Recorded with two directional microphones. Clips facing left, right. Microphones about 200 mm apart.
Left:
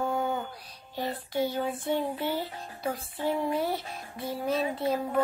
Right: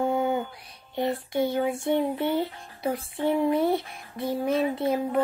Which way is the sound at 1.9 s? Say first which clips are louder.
Right 4 dB; 15° right (ahead or behind).